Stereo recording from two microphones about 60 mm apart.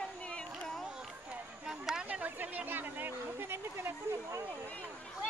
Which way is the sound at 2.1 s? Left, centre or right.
Right.